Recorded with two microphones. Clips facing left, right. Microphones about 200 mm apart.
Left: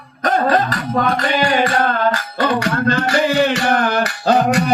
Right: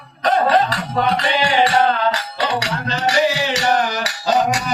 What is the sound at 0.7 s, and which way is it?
Music, 50° left (ahead or behind).